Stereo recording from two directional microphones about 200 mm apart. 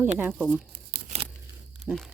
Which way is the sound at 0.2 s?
10° right (ahead or behind).